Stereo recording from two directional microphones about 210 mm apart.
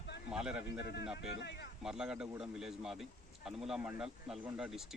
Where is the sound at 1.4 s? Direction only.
55° left (ahead or behind).